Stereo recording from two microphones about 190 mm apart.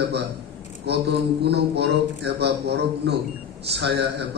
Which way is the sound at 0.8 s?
60° right (ahead or behind).